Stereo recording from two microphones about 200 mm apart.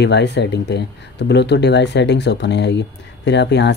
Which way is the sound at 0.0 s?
60° left (ahead or behind).